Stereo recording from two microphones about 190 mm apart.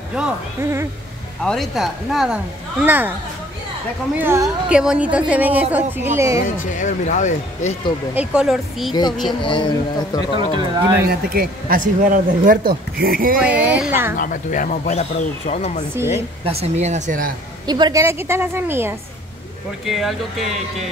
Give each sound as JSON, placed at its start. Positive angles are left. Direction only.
{"t": 0.1, "sound": "a woman's voice", "side_deg": -10}
{"t": 1.4, "sound": "speech", "side_deg": 0}
{"t": 4.2, "sound": "a woman's voice", "side_deg": -10}
{"t": 6.4, "sound": "speech", "side_deg": 40}
{"t": 8.1, "sound": "speech", "side_deg": -5}
{"t": 9.4, "sound": "a man's voice", "side_deg": 25}
{"t": 10.5, "sound": "speech", "side_deg": -25}
{"t": 11.1, "sound": "speech", "side_deg": -50}
{"t": 13.4, "sound": "a woman's voice", "side_deg": -5}
{"t": 14.1, "sound": "speech", "side_deg": 45}
{"t": 16.4, "sound": "speech", "side_deg": -35}
{"t": 17.6, "sound": "a woman's voice", "side_deg": -20}
{"t": 19.8, "sound": "speech", "side_deg": 0}